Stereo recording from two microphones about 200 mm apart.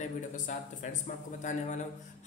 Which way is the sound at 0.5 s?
35° left (ahead or behind).